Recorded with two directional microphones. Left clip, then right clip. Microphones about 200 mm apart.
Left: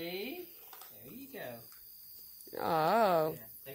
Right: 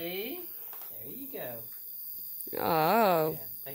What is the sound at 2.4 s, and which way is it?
Speech, 25° right (ahead or behind).